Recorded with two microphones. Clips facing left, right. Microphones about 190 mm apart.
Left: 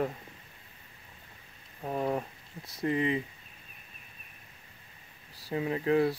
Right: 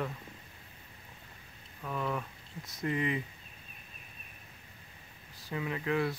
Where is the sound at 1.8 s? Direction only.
40° left (ahead or behind).